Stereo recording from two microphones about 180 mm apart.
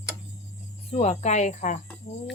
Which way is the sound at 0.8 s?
35° left (ahead or behind).